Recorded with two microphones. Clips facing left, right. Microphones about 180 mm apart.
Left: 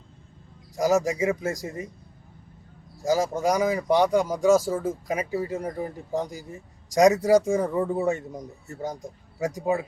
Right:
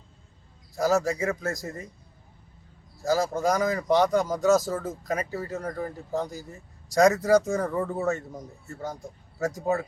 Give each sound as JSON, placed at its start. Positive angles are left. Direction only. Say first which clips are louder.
{"t": 0.8, "sound": "speech", "louder": "left 2 dB", "side_deg": 15}
{"t": 3.0, "sound": "speech", "louder": "left 1 dB", "side_deg": 15}